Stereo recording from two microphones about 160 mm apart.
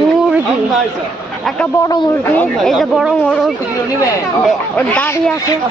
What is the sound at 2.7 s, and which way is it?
Speech, 5° right (ahead or behind).